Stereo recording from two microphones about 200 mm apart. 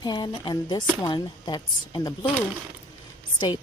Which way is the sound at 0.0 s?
20° left (ahead or behind).